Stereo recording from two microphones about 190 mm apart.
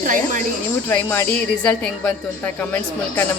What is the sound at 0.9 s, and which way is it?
A woman's voice, 10° left (ahead or behind).